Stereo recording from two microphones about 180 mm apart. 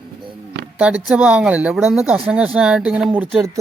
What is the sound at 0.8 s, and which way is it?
Speech, 5° right (ahead or behind).